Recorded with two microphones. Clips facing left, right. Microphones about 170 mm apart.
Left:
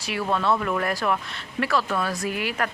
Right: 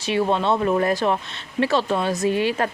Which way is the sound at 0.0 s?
25° right (ahead or behind).